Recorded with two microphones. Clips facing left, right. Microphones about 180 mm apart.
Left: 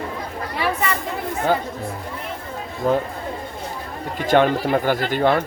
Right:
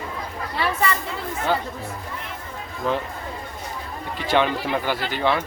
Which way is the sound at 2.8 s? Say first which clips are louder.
Left 5 dB; 45° left (ahead or behind).